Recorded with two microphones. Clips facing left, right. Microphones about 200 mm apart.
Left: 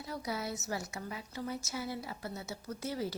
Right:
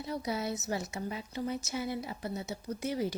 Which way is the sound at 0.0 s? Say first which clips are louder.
Right 4 dB; 20° right (ahead or behind).